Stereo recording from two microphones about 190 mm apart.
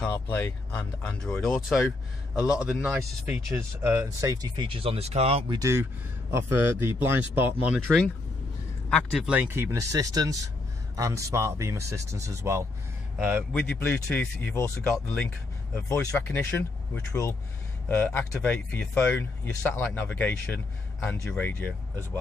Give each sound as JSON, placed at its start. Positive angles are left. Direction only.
{"t": 0.0, "sound": "speech", "side_deg": 10}
{"t": 5.6, "sound": "speech", "side_deg": -15}
{"t": 13.5, "sound": "speech", "side_deg": 5}